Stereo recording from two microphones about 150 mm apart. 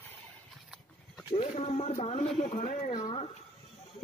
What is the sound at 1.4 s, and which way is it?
A man's voice, 45° left (ahead or behind).